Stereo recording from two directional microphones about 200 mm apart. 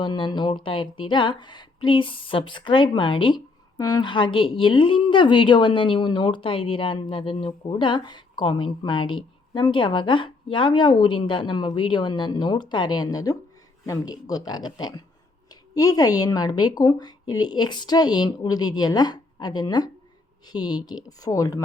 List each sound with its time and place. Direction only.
0.0 s a woman's voice: 20° left (ahead or behind)